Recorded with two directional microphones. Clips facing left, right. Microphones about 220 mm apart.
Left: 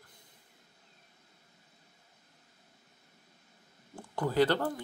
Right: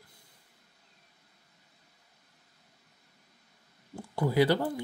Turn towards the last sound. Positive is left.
turn(degrees=-10)  # may be behind; listen again after turning